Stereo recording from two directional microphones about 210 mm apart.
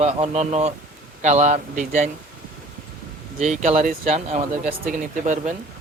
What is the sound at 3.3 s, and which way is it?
Speech, 35° right (ahead or behind).